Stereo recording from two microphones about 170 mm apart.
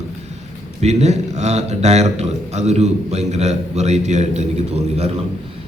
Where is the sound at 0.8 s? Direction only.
40° right (ahead or behind).